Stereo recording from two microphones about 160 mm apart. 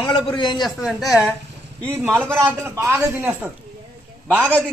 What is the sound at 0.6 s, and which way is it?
Speech, centre (ahead or behind).